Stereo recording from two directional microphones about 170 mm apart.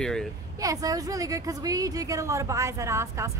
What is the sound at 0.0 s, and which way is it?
Speech, 5° left (ahead or behind).